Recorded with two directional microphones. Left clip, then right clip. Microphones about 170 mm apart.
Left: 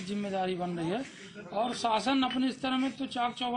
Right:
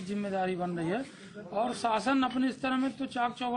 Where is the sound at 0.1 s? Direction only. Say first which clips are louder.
Right 1 dB; centre (ahead or behind).